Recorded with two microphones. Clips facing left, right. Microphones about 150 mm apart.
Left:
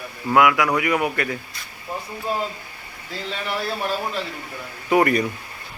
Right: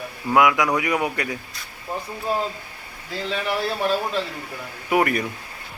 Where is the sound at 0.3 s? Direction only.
20° right (ahead or behind).